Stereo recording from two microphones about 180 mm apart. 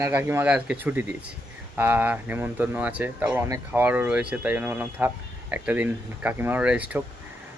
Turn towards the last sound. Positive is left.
turn(degrees=-5)  # may be behind; listen again after turning